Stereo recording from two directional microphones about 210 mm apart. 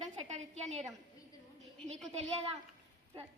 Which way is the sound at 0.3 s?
30° right (ahead or behind).